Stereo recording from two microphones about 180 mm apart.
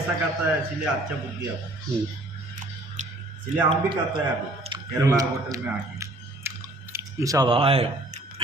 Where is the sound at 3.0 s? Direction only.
40° right (ahead or behind).